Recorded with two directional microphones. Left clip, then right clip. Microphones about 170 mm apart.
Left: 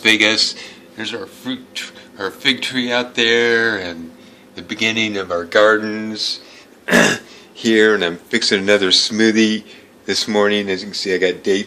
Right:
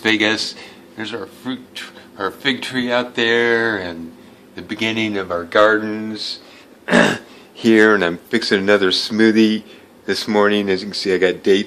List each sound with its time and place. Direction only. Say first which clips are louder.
0.0 s a man's voice: left 4 dB; 10° right (ahead or behind)
7.5 s a man's voice: right 1 dB; 15° right (ahead or behind)
10.7 s speech: right 1 dB; 20° right (ahead or behind)